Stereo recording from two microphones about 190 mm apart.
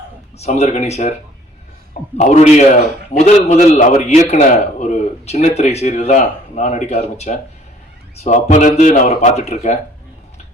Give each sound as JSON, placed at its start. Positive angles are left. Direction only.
{"t": 0.3, "sound": "a man's voice", "side_deg": 35}